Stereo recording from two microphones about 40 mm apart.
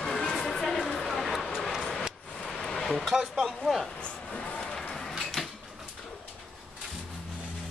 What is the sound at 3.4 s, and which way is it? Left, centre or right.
Speech, centre.